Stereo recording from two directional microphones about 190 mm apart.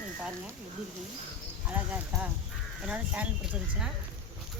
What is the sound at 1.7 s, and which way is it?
A woman's voice, 10° right (ahead or behind).